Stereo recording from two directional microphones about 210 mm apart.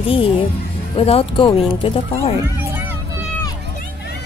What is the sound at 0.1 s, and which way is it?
Speech, 25° left (ahead or behind).